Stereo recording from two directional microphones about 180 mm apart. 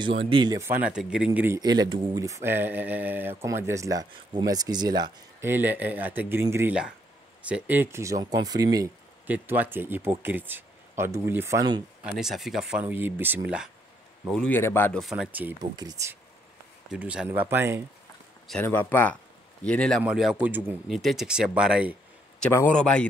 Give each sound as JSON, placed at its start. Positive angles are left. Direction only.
{"t": 0.3, "sound": "speech", "side_deg": -25}
{"t": 0.6, "sound": "speech", "side_deg": -10}
{"t": 1.6, "sound": "speech", "side_deg": -25}
{"t": 5.5, "sound": "speech", "side_deg": -10}
{"t": 12.0, "sound": "speech", "side_deg": 0}
{"t": 14.3, "sound": "speech", "side_deg": 5}
{"t": 15.0, "sound": "speech", "side_deg": 0}
{"t": 15.7, "sound": "speech", "side_deg": -20}
{"t": 16.9, "sound": "speech", "side_deg": -5}
{"t": 18.5, "sound": "speech", "side_deg": 10}
{"t": 22.5, "sound": "speech", "side_deg": 15}